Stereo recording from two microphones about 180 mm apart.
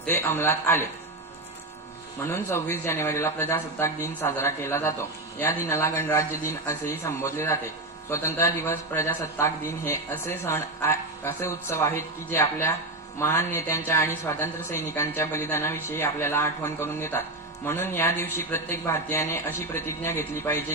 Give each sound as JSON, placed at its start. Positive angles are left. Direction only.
{"t": 0.0, "sound": "a man's voice", "side_deg": 10}
{"t": 2.2, "sound": "a man's voice", "side_deg": 15}